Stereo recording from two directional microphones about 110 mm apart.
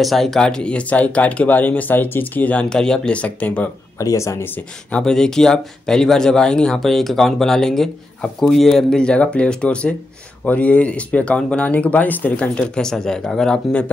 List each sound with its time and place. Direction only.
0.0 s speech: centre (ahead or behind)
4.0 s speech: 30° left (ahead or behind)
4.9 s speech: 5° left (ahead or behind)